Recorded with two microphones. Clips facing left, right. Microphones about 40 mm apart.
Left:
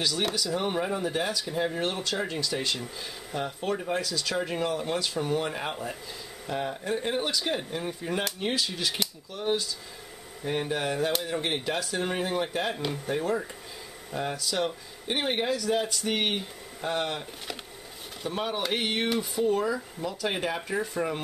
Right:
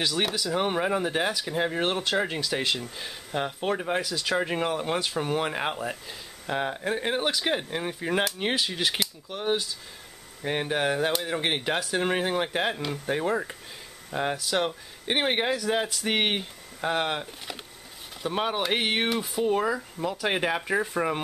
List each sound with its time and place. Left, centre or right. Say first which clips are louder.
0.0 s speech: right 1 dB; right
12.7 s speech: even; centre
13.1 s speech: right 3 dB; right
18.3 s speech: right 3 dB; right